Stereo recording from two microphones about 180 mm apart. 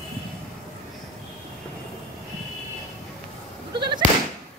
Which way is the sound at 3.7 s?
25° right (ahead or behind).